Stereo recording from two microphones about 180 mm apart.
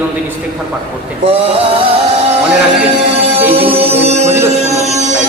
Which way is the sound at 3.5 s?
30° right (ahead or behind).